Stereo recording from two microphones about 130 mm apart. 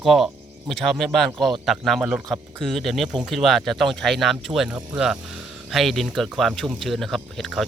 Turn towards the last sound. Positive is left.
turn(degrees=0)  # may be behind; listen again after turning